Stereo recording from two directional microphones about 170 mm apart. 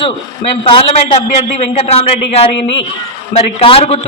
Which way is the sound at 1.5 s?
35° left (ahead or behind).